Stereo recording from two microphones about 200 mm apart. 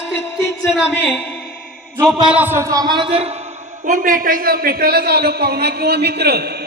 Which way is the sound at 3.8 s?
40° right (ahead or behind).